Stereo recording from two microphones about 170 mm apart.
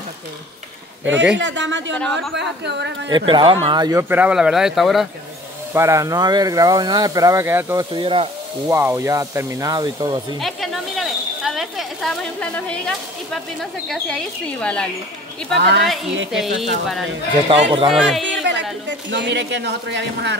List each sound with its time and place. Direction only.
1.4 s speech: 90° right
3.1 s speech: 30° right (ahead or behind)
4.1 s speech: 5° right (ahead or behind)
5.7 s speech: 15° right (ahead or behind)
7.9 s sizzle: 30° right (ahead or behind)
8.6 s speech: 15° right (ahead or behind)
10.4 s speech: centre (ahead or behind)
15.5 s a woman's voice: 80° right
15.8 s speech: centre (ahead or behind)
17.5 s sizzle: 30° right (ahead or behind)
17.8 s speech: centre (ahead or behind)
18.2 s speech: 90° right